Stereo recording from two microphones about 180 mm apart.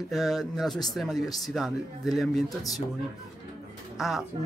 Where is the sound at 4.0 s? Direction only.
Centre (ahead or behind).